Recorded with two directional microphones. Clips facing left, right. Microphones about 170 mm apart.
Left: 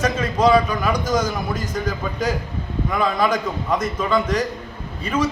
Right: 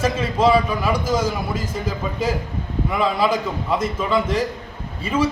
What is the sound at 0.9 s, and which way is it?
Speech, 30° right (ahead or behind).